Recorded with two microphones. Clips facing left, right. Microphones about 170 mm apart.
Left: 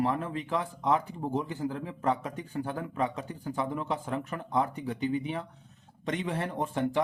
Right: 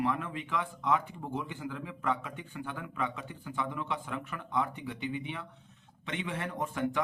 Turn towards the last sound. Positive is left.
turn(degrees=35)  # may be behind; listen again after turning